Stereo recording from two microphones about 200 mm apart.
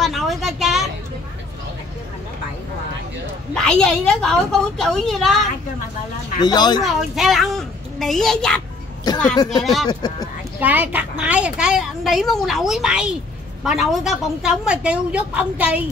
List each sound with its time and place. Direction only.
0.0 s a sound: centre (ahead or behind)
3.5 s a child's voice: 5° left (ahead or behind)
6.4 s speech: 20° left (ahead or behind)
6.8 s a child's voice: centre (ahead or behind)
9.1 s speech: 20° left (ahead or behind)
9.6 s a child's voice: centre (ahead or behind)